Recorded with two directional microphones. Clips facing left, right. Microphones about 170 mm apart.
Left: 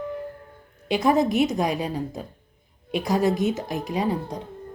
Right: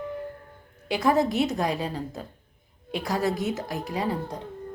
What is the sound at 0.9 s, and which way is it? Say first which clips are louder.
Speech: left 2 dB; 20° left (ahead or behind).